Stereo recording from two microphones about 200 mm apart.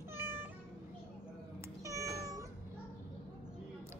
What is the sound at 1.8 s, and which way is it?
Cat, 15° right (ahead or behind).